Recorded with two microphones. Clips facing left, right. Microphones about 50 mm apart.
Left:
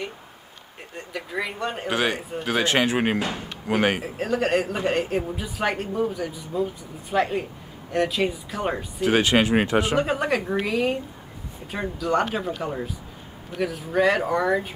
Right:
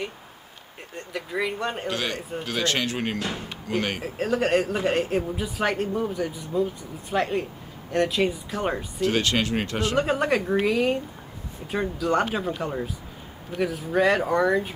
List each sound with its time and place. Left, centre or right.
0.9 s speech: centre
1.9 s speech: centre
4.0 s speech: centre
9.0 s speech: centre
9.9 s speech: centre